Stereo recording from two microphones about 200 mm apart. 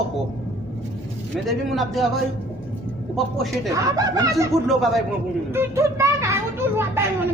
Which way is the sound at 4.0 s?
15° right (ahead or behind).